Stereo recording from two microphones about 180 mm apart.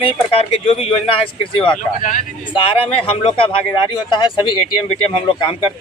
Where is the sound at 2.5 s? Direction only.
30° left (ahead or behind).